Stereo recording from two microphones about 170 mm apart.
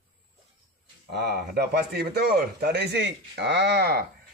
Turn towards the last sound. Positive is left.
turn(degrees=-70)  # may be behind; listen again after turning